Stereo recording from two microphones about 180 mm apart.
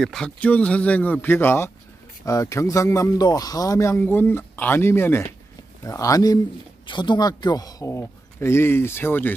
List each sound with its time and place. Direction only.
0.0 s speech: 5° left (ahead or behind)